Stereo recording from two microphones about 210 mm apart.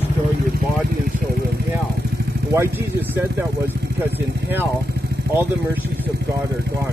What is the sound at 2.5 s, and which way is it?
Speech, 10° right (ahead or behind).